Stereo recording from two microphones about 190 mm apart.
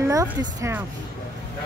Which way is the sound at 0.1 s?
15° right (ahead or behind).